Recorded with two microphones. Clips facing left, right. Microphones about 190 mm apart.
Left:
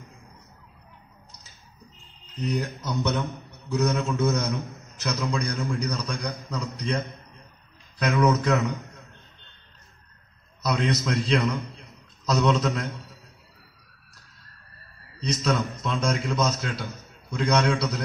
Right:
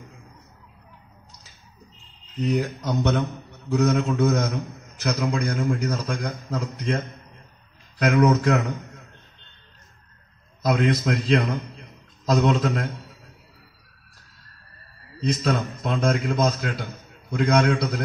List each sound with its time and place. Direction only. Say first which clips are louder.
2.4 s a man's voice: right 4 dB; 45° right (ahead or behind)
10.6 s a man's voice: right 4 dB; 50° right (ahead or behind)
15.4 s a man's voice: right 1 dB; 45° right (ahead or behind)